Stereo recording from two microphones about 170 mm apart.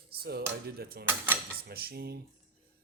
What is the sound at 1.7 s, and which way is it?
Speech, 65° right (ahead or behind).